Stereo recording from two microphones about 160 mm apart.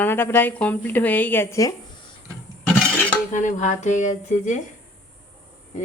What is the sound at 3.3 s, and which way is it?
Speech, 50° left (ahead or behind).